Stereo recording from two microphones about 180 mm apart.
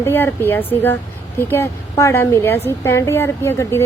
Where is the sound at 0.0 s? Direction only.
10° left (ahead or behind).